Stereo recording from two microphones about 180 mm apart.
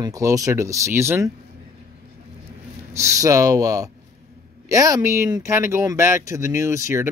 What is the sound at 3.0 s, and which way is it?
Speech, 20° right (ahead or behind).